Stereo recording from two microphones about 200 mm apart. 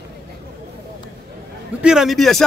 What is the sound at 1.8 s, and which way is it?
Speech, centre (ahead or behind).